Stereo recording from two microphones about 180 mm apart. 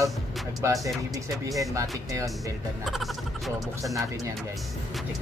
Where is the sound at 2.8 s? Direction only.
Centre (ahead or behind).